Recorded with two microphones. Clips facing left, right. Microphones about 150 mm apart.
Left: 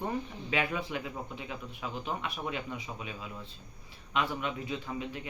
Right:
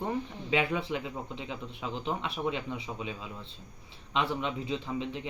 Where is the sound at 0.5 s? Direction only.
25° right (ahead or behind).